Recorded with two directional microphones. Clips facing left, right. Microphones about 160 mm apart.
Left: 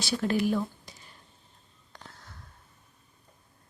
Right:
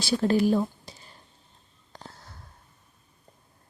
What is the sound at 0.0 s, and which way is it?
Speech, 35° right (ahead or behind).